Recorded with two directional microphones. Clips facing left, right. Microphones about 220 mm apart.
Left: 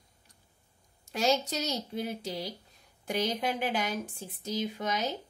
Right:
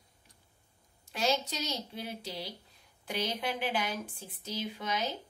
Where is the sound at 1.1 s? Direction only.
45° left (ahead or behind).